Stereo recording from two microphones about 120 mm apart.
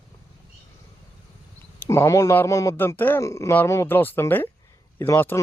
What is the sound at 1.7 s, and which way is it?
Speech, 20° left (ahead or behind).